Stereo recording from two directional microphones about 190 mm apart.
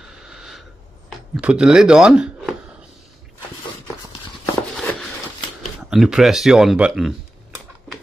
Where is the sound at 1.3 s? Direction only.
5° right (ahead or behind).